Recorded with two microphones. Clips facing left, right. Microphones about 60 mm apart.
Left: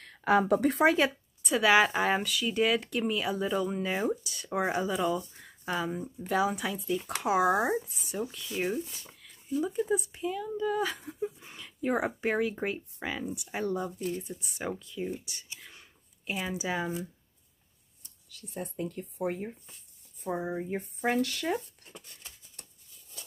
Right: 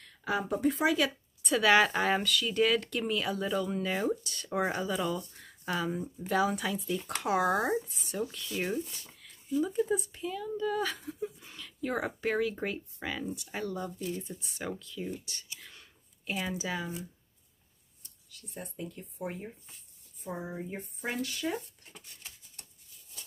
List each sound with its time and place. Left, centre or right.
0.0 s speech: left
0.8 s speech: left
1.4 s speech: centre
14.0 s speech: left
15.6 s a sound: centre
16.7 s speech: left
18.9 s speech: left
20.3 s speech: left